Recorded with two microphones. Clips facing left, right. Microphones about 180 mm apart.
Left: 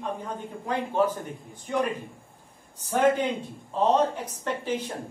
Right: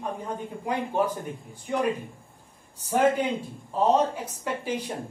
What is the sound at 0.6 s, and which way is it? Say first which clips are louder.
Speech: left 1 dB; 15° right (ahead or behind).